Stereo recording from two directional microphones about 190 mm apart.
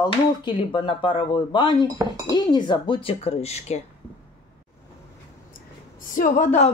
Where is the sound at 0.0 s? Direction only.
25° left (ahead or behind).